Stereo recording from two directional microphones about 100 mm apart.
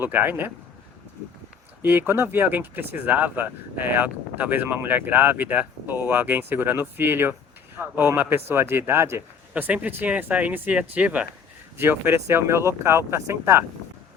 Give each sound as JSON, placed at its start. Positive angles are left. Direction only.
{"t": 0.0, "sound": "speech", "side_deg": -20}
{"t": 1.8, "sound": "speech", "side_deg": -20}